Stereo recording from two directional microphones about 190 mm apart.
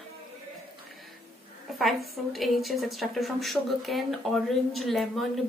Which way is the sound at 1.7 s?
Centre (ahead or behind).